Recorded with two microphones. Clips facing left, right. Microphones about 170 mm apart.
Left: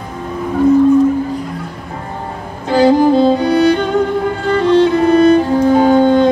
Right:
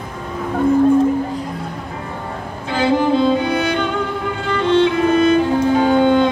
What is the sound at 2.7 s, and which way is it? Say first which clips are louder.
Music: left 6 dB; 40° left (ahead or behind).